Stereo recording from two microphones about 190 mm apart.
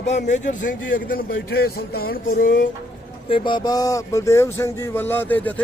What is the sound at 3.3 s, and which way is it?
Speech, 25° left (ahead or behind).